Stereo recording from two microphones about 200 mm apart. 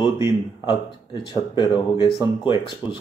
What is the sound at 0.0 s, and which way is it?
Speech, 25° left (ahead or behind).